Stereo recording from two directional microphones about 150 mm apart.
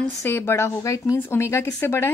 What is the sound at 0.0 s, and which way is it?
A woman's voice, 15° left (ahead or behind).